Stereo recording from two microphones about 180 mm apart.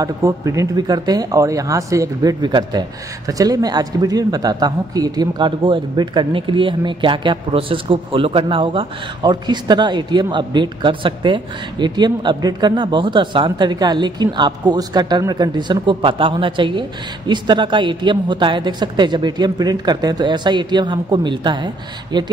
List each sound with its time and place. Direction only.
0.0 s a man's voice: 15° right (ahead or behind)